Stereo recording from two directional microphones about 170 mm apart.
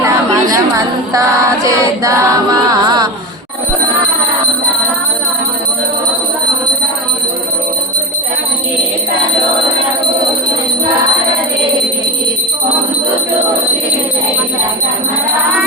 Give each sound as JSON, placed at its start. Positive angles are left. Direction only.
{"t": 0.5, "sound": "female singing", "side_deg": -20}